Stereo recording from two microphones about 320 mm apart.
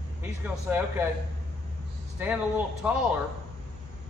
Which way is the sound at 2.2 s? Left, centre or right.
Centre.